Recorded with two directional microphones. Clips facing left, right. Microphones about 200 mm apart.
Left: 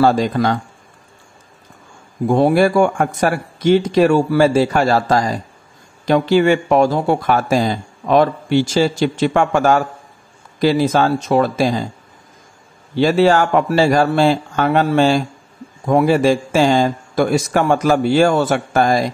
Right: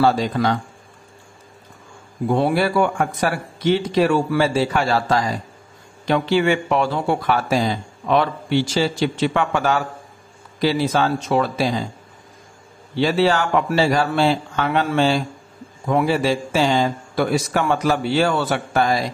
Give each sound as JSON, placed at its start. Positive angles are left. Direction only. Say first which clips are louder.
{"t": 0.0, "sound": "a man's voice", "louder": "left 3 dB", "side_deg": 50}
{"t": 2.2, "sound": "a man's voice", "louder": "left 5 dB", "side_deg": 45}
{"t": 12.9, "sound": "a man's voice", "louder": "left 5 dB", "side_deg": 45}